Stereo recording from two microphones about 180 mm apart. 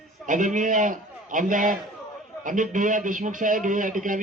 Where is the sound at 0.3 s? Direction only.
45° right (ahead or behind).